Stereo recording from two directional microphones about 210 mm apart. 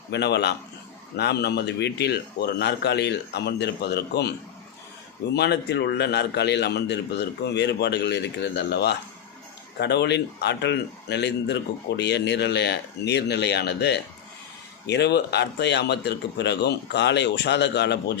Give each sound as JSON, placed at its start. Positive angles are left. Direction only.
{"t": 0.1, "sound": "a man's voice", "side_deg": 55}
{"t": 5.3, "sound": "a man's voice", "side_deg": 50}